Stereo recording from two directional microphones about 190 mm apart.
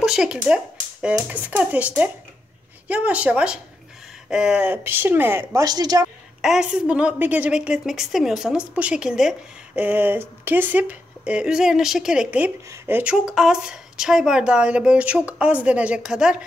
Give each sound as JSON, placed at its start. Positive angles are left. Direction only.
{"t": 0.0, "sound": "a woman's voice", "side_deg": -5}
{"t": 6.4, "sound": "speech", "side_deg": -5}